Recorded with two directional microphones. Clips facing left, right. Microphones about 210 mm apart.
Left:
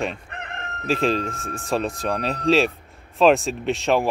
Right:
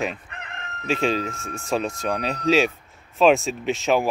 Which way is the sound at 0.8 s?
Centre (ahead or behind).